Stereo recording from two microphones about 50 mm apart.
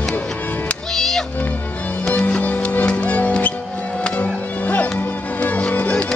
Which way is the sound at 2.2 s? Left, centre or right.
Left.